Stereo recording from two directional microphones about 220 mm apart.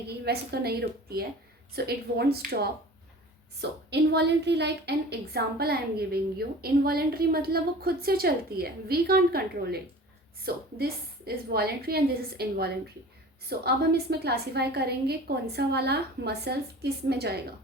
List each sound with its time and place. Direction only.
0.3 s a woman's voice: 45° right (ahead or behind)